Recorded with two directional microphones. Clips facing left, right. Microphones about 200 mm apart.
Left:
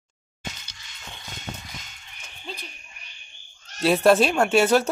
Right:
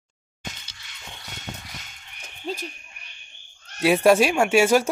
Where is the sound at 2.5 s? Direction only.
40° right (ahead or behind).